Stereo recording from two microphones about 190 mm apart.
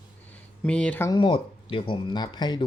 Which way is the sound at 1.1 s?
25° left (ahead or behind).